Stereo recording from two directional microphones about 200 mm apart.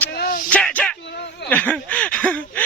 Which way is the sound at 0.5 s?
5° left (ahead or behind).